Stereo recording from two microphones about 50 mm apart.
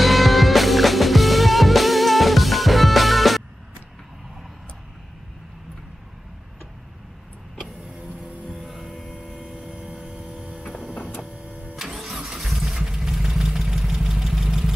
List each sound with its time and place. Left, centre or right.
0.0 s music: centre
8.5 s vehicle: centre
9.6 s vehicle: centre
10.6 s printer: centre
11.7 s vehicle: centre